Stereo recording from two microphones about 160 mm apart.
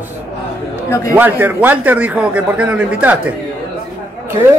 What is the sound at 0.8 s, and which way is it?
Speech, 20° left (ahead or behind).